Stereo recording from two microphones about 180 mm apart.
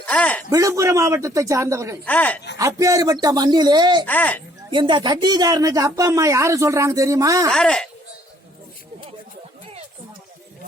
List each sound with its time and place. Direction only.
0.0 s a man's voice: 10° left (ahead or behind)
0.5 s a man's voice: 20° right (ahead or behind)
2.0 s speech: 10° left (ahead or behind)
2.6 s speech: 15° right (ahead or behind)
4.0 s speech: 10° left (ahead or behind)
4.7 s speech: 25° right (ahead or behind)
7.5 s speech: 5° left (ahead or behind)